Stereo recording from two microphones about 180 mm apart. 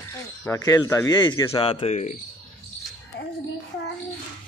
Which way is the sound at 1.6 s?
30° left (ahead or behind).